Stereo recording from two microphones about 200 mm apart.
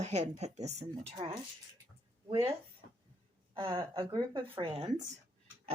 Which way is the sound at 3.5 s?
25° right (ahead or behind).